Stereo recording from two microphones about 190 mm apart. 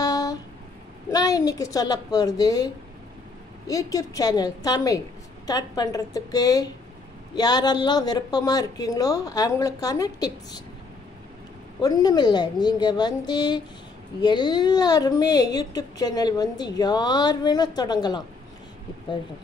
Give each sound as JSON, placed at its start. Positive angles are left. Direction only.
{"t": 0.0, "sound": "a sound", "side_deg": 20}
{"t": 1.1, "sound": "a woman's voice", "side_deg": 20}
{"t": 11.8, "sound": "a woman's voice", "side_deg": 20}